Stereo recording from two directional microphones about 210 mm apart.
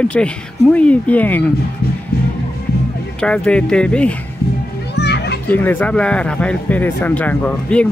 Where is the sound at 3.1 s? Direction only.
5° left (ahead or behind).